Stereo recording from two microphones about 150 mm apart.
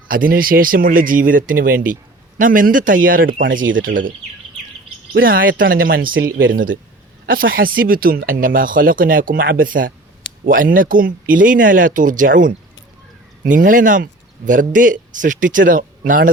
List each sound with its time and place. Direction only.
0.1 s speech: 70° right (ahead or behind)
5.2 s speech: 70° right (ahead or behind)